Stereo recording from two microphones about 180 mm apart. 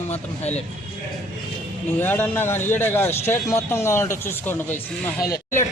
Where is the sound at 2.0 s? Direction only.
10° left (ahead or behind).